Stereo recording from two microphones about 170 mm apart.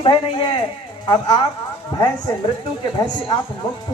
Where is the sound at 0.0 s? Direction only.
30° left (ahead or behind).